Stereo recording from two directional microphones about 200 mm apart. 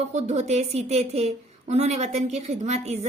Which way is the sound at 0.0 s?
35° right (ahead or behind).